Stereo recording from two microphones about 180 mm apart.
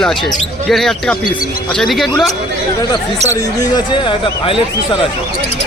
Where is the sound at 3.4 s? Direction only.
20° left (ahead or behind).